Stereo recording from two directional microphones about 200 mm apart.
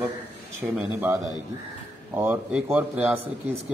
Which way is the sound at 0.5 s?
10° right (ahead or behind).